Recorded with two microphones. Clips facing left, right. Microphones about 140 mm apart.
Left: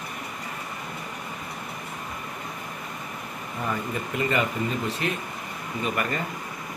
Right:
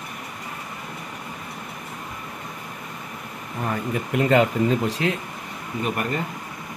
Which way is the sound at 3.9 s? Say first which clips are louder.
Right 9 dB; 85° right.